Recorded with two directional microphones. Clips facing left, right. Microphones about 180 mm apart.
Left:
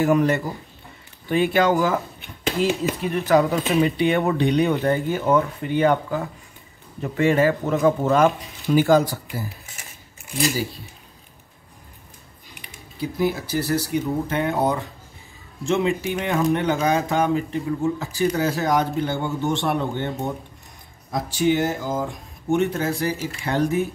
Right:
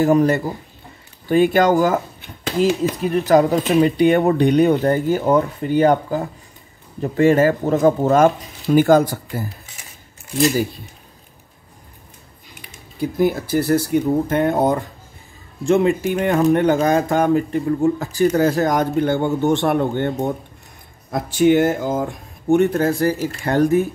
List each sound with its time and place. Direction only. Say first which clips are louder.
0.0 s speech: right 4 dB; 35° right (ahead or behind); by 9.5 s 55° right (ahead or behind)
10.5 s speech: right 6 dB; 55° right (ahead or behind)
13.0 s speech: right 5 dB; 45° right (ahead or behind)
21.4 s speech: right 7 dB; 60° right (ahead or behind); by 23.9 s 45° right (ahead or behind)